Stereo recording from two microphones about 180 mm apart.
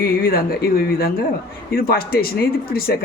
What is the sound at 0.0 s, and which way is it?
A woman's voice, 55° left (ahead or behind).